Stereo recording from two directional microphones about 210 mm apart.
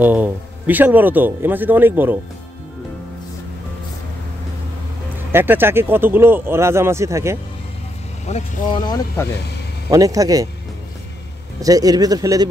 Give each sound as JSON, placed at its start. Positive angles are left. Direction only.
{"t": 0.0, "sound": "speech", "side_deg": -10}
{"t": 5.3, "sound": "speech", "side_deg": -10}
{"t": 8.3, "sound": "speech", "side_deg": 30}
{"t": 8.8, "sound": "speech", "side_deg": 15}
{"t": 9.8, "sound": "speech", "side_deg": -15}
{"t": 11.6, "sound": "speech", "side_deg": -15}